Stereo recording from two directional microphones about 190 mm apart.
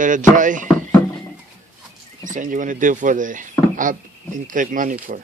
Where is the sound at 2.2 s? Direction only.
45° right (ahead or behind).